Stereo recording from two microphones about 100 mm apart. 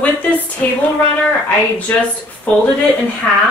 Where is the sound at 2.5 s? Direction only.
15° left (ahead or behind).